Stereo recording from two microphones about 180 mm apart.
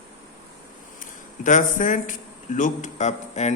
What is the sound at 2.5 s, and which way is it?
Speech, 45° left (ahead or behind).